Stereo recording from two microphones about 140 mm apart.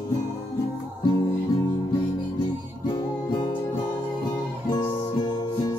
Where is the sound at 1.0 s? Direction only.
25° left (ahead or behind).